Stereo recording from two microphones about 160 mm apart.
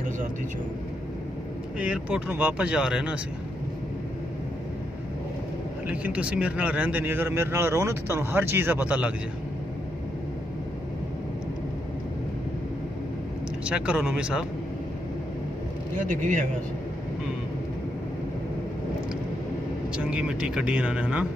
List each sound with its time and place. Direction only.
1.8 s speech: 10° right (ahead or behind)
5.9 s speech: 10° right (ahead or behind)
13.7 s speech: 5° right (ahead or behind)
16.0 s speech: 55° right (ahead or behind)
20.0 s speech: 5° right (ahead or behind)